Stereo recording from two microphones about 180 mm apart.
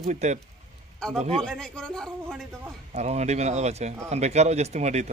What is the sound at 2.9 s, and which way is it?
Speech, 40° right (ahead or behind).